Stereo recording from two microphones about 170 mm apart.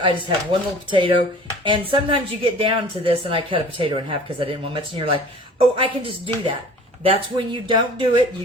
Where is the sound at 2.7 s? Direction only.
30° right (ahead or behind).